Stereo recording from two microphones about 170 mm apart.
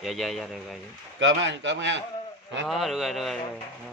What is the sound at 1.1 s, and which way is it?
Speech, 90° right.